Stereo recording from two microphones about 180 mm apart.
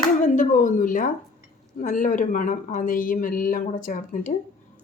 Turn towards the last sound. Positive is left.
turn(degrees=45)  # may be behind; listen again after turning